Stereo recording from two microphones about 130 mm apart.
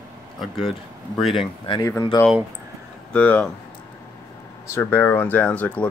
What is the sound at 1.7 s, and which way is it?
Speech, 45° left (ahead or behind).